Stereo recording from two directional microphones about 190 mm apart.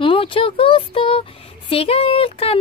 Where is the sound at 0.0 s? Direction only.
25° left (ahead or behind).